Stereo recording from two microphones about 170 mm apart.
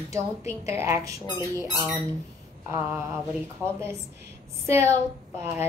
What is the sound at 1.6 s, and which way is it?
Squeak, centre (ahead or behind).